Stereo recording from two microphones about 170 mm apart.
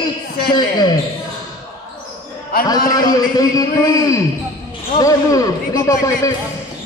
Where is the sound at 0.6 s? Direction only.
25° left (ahead or behind).